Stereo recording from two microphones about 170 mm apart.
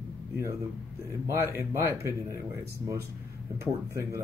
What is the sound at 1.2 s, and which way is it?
Speech, 15° right (ahead or behind).